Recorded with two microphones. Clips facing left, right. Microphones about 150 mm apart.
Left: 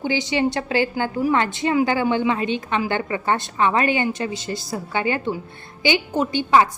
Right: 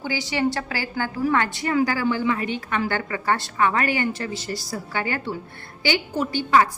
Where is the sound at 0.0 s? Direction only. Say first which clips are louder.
Left 3 dB; 20° left (ahead or behind).